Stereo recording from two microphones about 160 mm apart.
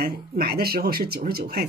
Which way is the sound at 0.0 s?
75° right (ahead or behind).